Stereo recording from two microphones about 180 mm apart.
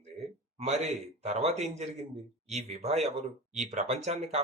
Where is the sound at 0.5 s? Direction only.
35° right (ahead or behind).